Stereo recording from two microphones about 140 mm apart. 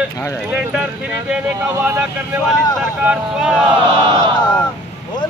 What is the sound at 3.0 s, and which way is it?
Speech, 5° right (ahead or behind).